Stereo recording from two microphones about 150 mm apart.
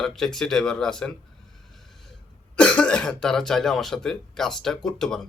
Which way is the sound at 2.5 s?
10° left (ahead or behind).